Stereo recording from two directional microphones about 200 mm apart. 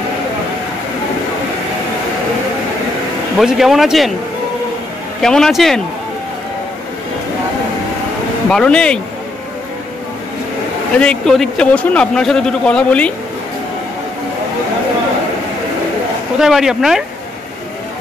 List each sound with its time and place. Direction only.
3.3 s a man's voice: centre (ahead or behind)
5.2 s a man's voice: centre (ahead or behind)
8.5 s a man's voice: 5° left (ahead or behind)
11.0 s a man's voice: 5° left (ahead or behind)
16.3 s a man's voice: centre (ahead or behind)